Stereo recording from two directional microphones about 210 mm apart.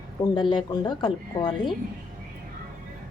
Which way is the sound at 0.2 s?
20° left (ahead or behind).